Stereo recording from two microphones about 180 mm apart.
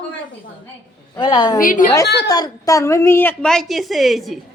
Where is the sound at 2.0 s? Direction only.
65° left (ahead or behind).